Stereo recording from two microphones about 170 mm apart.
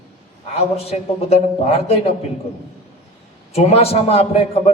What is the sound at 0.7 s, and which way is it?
A man's voice, 35° left (ahead or behind).